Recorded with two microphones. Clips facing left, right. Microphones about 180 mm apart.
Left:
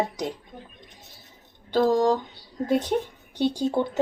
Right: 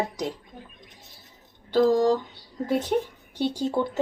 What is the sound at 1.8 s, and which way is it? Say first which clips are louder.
Speech: right 1 dB; 55° left (ahead or behind).